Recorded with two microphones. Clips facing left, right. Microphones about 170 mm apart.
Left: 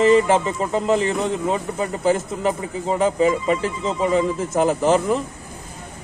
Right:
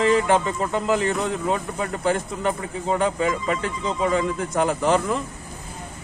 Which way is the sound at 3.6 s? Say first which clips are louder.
Left 2 dB; 30° left (ahead or behind).